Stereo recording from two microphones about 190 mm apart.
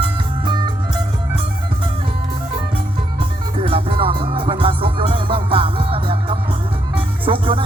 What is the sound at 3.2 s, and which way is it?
Music, 30° right (ahead or behind).